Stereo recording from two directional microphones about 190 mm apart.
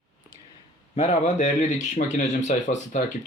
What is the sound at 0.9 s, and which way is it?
Speech, 35° left (ahead or behind).